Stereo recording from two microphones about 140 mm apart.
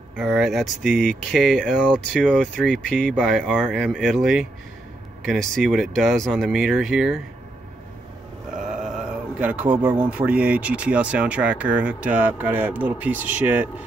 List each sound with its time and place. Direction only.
0.2 s speech: centre (ahead or behind)
8.5 s speech: 5° right (ahead or behind)